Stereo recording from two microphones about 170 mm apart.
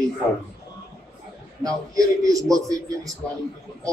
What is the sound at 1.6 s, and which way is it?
Speech, 20° right (ahead or behind).